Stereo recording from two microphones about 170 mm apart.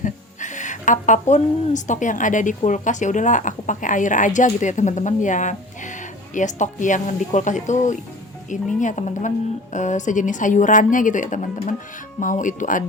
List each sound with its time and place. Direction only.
0.0 s speech: 45° left (ahead or behind)